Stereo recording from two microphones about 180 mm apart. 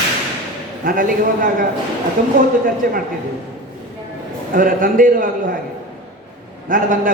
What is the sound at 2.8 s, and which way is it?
Speech, 55° right (ahead or behind).